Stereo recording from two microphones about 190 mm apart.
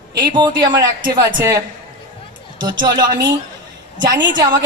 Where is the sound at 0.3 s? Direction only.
25° right (ahead or behind).